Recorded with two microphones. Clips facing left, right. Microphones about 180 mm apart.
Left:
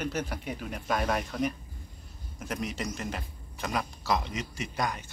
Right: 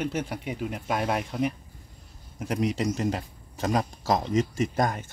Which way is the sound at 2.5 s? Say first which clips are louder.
Right 8 dB; 30° right (ahead or behind).